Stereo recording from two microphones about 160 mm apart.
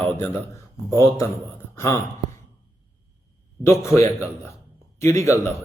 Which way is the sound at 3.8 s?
15° left (ahead or behind).